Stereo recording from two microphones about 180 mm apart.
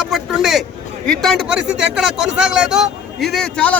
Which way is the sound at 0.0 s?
Centre (ahead or behind).